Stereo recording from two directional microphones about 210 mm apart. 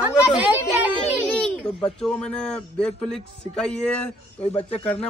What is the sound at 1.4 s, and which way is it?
Speech, 5° left (ahead or behind).